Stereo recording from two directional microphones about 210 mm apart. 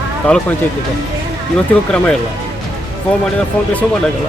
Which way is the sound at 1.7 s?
5° left (ahead or behind).